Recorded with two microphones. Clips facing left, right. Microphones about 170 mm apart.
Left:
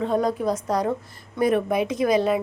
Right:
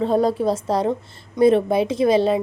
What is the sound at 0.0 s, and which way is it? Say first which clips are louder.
A woman's voice: right 4 dB; 30° right (ahead or behind).